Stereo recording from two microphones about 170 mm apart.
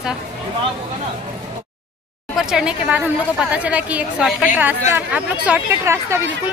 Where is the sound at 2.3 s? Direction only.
5° right (ahead or behind).